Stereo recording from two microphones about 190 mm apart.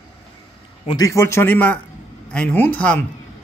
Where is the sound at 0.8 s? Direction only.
20° left (ahead or behind).